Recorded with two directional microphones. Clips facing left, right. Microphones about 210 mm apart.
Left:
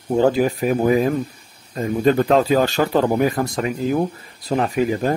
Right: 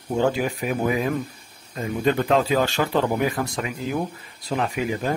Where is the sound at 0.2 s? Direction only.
35° left (ahead or behind).